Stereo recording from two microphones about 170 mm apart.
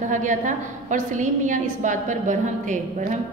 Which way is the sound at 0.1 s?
45° right (ahead or behind).